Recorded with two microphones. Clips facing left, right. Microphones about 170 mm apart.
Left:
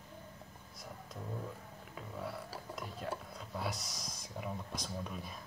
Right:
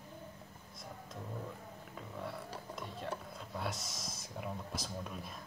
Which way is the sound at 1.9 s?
5° left (ahead or behind).